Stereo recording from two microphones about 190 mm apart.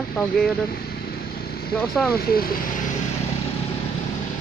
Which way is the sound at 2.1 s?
50° left (ahead or behind).